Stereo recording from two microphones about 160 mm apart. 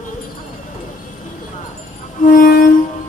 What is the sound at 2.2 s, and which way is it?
Music, 60° left (ahead or behind).